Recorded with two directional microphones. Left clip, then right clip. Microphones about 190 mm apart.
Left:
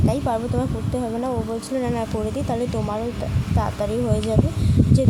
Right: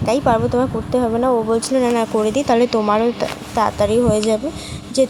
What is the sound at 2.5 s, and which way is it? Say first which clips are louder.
A woman's voice: right 10 dB; 15° right (ahead or behind).